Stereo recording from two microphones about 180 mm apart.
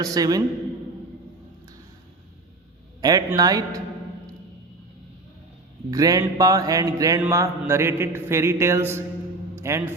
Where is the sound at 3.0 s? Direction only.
20° right (ahead or behind).